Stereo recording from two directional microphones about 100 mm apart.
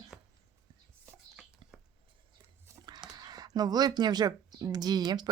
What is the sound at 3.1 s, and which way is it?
Speech, 40° right (ahead or behind).